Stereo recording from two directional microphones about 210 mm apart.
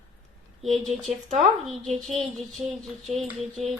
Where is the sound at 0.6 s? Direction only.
Centre (ahead or behind).